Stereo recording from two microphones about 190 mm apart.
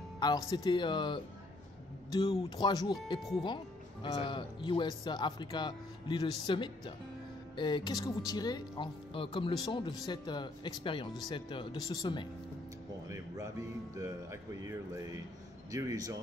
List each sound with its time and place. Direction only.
0.5 s speech: 25° left (ahead or behind)
3.2 s speech: centre (ahead or behind)
4.0 s speech: 25° left (ahead or behind)
13.1 s speech: 15° right (ahead or behind)